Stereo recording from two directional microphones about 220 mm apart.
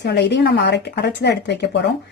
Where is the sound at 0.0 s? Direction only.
50° left (ahead or behind).